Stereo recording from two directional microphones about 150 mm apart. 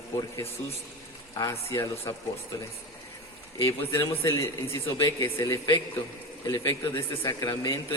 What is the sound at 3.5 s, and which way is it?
A man's voice, 20° left (ahead or behind).